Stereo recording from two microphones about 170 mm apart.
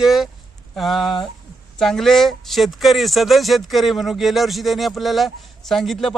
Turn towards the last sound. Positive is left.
turn(degrees=0)  # may be behind; listen again after turning